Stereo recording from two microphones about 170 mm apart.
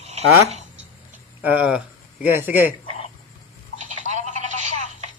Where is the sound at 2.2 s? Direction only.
10° right (ahead or behind).